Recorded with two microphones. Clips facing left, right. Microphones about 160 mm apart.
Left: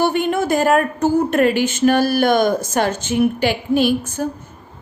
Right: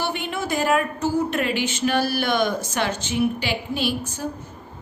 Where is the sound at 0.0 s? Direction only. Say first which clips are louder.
Left 9 dB; 50° left (ahead or behind).